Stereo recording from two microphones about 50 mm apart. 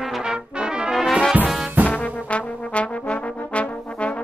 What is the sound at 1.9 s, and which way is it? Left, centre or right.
Trombone, left.